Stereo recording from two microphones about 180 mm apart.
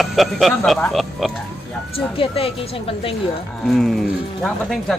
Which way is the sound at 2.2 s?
30° left (ahead or behind).